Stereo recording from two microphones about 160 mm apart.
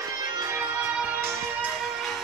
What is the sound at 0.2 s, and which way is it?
Music, 25° right (ahead or behind).